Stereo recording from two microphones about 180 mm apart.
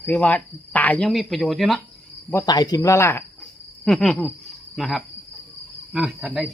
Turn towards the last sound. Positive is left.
turn(degrees=-5)  # may be behind; listen again after turning